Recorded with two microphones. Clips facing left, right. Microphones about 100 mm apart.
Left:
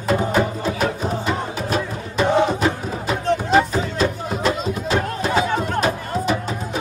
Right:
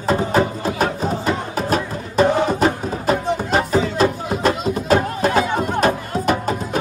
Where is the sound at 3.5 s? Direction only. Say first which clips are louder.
Even; 45° right (ahead or behind).